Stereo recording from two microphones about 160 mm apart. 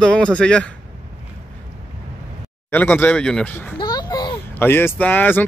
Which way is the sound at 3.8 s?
25° left (ahead or behind).